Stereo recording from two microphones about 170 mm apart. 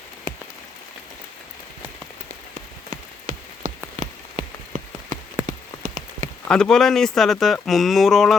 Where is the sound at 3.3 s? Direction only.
45° right (ahead or behind).